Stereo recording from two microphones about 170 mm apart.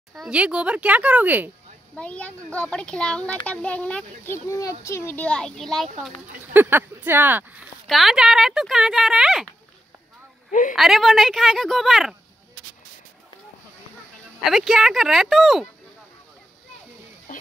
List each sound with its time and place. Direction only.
0.1 s speech: 5° right (ahead or behind)
2.0 s a child's voice: 5° left (ahead or behind)
6.5 s speech: 10° right (ahead or behind)
10.7 s speech: centre (ahead or behind)
14.4 s speech: centre (ahead or behind)
17.3 s a sound: 50° left (ahead or behind)